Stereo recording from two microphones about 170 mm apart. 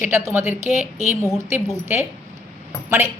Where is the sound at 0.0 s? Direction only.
15° right (ahead or behind).